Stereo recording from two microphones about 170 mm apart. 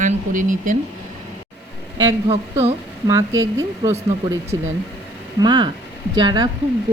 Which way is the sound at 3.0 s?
20° right (ahead or behind).